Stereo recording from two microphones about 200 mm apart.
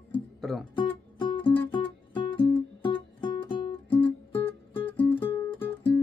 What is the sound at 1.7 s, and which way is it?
Music, 25° left (ahead or behind).